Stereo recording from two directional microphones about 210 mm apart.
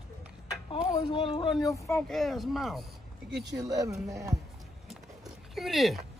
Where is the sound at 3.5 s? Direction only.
15° right (ahead or behind).